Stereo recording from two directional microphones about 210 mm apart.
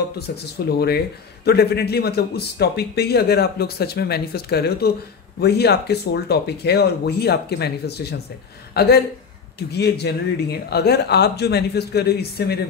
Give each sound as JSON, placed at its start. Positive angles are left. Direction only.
{"t": 0.7, "sound": "a man's voice", "side_deg": 50}